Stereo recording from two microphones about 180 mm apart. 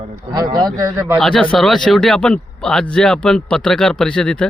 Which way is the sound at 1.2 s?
5° left (ahead or behind).